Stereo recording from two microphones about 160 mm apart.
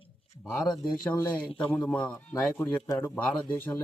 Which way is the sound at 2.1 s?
20° left (ahead or behind).